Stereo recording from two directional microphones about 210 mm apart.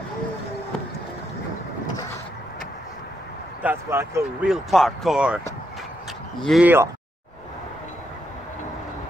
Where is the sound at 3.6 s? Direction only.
10° right (ahead or behind).